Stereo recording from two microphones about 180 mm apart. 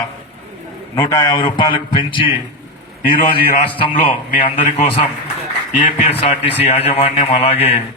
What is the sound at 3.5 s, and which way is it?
A man's voice, 30° left (ahead or behind).